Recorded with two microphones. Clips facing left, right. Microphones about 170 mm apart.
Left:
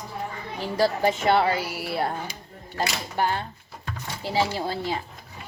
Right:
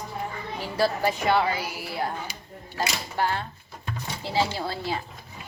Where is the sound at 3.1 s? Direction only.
20° left (ahead or behind).